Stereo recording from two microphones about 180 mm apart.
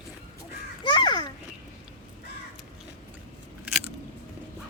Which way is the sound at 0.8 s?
25° left (ahead or behind).